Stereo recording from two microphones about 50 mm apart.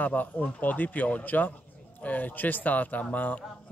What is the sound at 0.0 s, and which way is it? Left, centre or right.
Speech, left.